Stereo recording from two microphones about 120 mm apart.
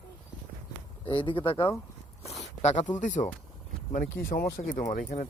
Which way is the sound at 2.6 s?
80° left.